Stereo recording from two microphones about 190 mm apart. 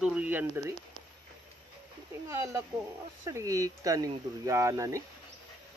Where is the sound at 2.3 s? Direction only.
15° right (ahead or behind).